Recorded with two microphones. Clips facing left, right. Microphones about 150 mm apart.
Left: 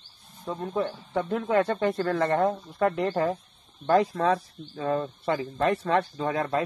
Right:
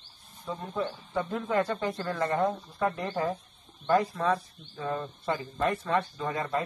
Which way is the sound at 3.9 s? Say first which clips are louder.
Left 3 dB; 85° left.